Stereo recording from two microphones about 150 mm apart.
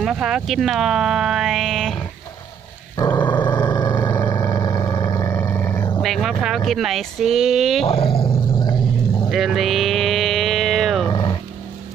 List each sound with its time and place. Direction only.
0.0 s speech: 5° right (ahead or behind)
3.2 s vehicle: 30° left (ahead or behind)
6.0 s speech: centre (ahead or behind)
7.9 s dog: 40° left (ahead or behind)
9.3 s a sound: centre (ahead or behind)
11.1 s vehicle: 30° left (ahead or behind)